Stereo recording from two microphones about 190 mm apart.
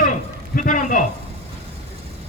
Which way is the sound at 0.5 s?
45° left (ahead or behind).